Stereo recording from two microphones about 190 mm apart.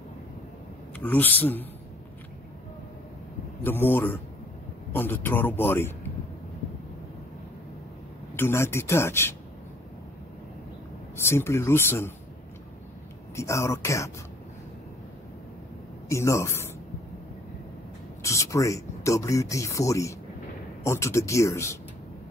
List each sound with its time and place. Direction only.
0.9 s speech: 10° left (ahead or behind)
3.6 s speech: 10° left (ahead or behind)
8.4 s speech: 15° left (ahead or behind)
11.1 s speech: 15° left (ahead or behind)
13.4 s speech: 15° left (ahead or behind)
16.1 s speech: 15° left (ahead or behind)
18.2 s speech: 15° left (ahead or behind)